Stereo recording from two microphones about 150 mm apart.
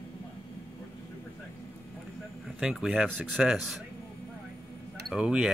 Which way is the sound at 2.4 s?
Centre (ahead or behind).